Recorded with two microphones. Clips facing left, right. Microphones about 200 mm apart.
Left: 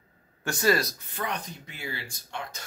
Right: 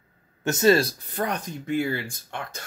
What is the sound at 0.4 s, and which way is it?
Speech, 20° right (ahead or behind).